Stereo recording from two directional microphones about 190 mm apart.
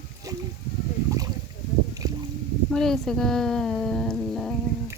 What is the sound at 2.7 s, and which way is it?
Speech, 5° left (ahead or behind).